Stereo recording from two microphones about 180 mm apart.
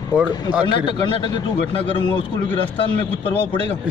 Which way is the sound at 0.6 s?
25° left (ahead or behind).